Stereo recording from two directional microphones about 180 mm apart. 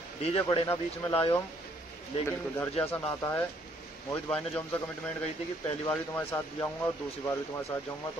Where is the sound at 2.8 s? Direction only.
15° left (ahead or behind).